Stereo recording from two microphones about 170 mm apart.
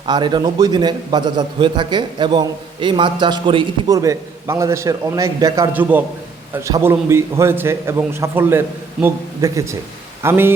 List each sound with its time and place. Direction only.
0.0 s a man's voice: 25° right (ahead or behind)